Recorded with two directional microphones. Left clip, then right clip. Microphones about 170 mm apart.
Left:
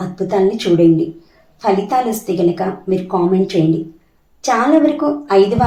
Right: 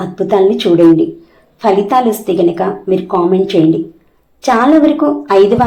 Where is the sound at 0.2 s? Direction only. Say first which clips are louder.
Right 5 dB; 15° right (ahead or behind).